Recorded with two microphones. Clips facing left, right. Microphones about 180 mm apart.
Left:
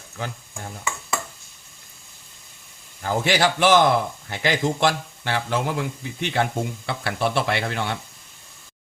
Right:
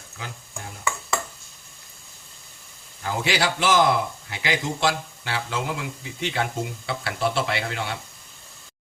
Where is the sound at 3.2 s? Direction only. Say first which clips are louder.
Left 4 dB; 50° left (ahead or behind).